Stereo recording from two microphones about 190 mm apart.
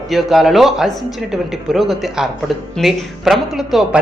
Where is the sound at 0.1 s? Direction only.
Centre (ahead or behind).